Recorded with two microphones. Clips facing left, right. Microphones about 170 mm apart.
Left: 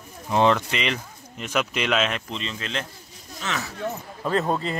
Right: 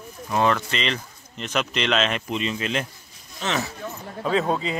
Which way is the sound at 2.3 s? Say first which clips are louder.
Right 5 dB; 10° right (ahead or behind).